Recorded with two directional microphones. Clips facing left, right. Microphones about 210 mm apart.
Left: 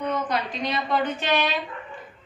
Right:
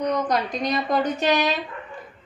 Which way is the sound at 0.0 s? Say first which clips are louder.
Right 3 dB; 40° right (ahead or behind).